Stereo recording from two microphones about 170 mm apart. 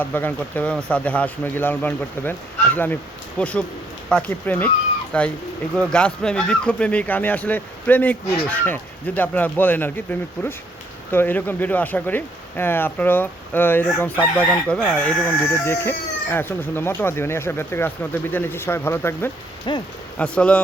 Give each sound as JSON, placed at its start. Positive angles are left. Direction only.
{"t": 0.0, "sound": "speech", "side_deg": 10}
{"t": 19.7, "sound": "speech", "side_deg": 30}
{"t": 20.1, "sound": "speech", "side_deg": 5}